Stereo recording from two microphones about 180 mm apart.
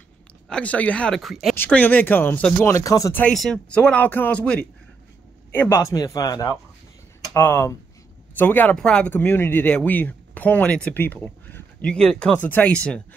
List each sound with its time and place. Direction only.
0.5 s speech: 5° left (ahead or behind)
1.5 s a man's voice: 10° left (ahead or behind)